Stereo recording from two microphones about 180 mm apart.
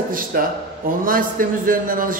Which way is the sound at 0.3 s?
55° right (ahead or behind).